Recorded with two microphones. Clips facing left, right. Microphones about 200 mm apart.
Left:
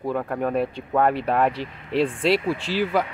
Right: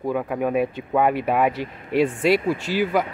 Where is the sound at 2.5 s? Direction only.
45° right (ahead or behind).